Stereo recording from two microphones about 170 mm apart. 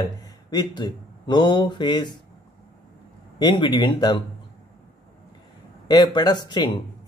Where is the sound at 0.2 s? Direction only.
25° left (ahead or behind).